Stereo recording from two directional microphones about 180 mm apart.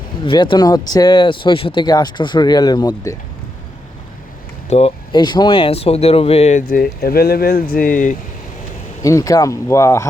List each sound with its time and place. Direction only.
0.3 s speech: 25° left (ahead or behind)
4.7 s speech: 40° left (ahead or behind)
5.1 s speech: 25° left (ahead or behind); by 8.1 s 50° left (ahead or behind)
9.0 s speech: 20° left (ahead or behind)